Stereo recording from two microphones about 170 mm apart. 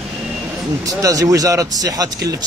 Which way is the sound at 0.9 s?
20° right (ahead or behind).